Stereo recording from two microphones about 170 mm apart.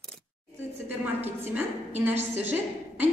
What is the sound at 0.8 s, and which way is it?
A woman's voice, 10° right (ahead or behind).